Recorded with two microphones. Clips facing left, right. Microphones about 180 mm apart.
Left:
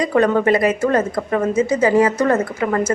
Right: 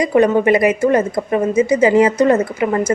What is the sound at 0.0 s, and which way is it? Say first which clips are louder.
Speech: right 3 dB; 15° right (ahead or behind).